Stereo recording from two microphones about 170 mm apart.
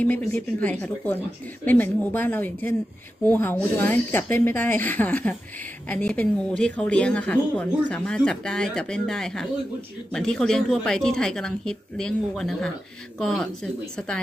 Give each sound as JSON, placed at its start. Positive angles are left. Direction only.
{"t": 0.0, "sound": "a woman's voice", "side_deg": 10}